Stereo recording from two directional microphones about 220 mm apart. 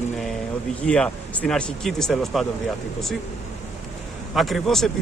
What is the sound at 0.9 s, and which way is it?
Speech, 5° left (ahead or behind).